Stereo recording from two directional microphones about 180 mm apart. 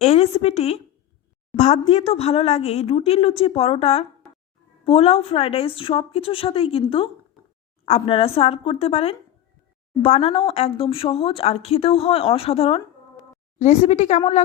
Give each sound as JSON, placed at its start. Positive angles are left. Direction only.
{"t": 0.0, "sound": "speech", "side_deg": 35}